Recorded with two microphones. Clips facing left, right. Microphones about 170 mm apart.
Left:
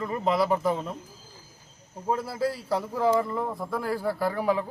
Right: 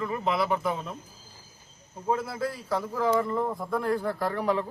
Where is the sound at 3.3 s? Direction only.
5° left (ahead or behind).